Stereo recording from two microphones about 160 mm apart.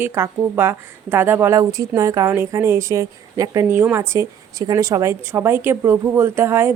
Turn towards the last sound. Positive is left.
turn(degrees=-15)  # may be behind; listen again after turning